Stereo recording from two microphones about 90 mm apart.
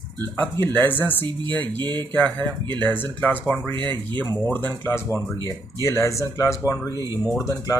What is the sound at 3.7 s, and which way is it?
Speech, 70° right (ahead or behind).